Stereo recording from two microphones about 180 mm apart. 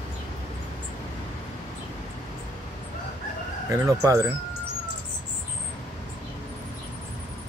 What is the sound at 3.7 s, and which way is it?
Speech, 15° right (ahead or behind).